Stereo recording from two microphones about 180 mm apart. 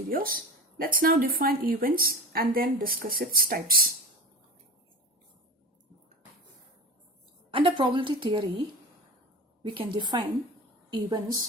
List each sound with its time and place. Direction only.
0.1 s speech: 50° right (ahead or behind)
7.5 s a woman's voice: 30° right (ahead or behind)
9.7 s a woman's voice: 25° right (ahead or behind)